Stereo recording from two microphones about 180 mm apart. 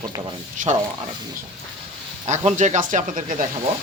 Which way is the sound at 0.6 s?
45° right (ahead or behind).